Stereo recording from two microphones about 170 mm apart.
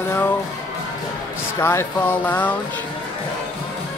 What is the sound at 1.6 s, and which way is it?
Speech, 15° left (ahead or behind).